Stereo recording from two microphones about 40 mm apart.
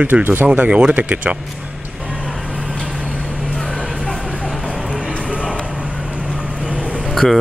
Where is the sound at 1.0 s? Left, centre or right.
Right.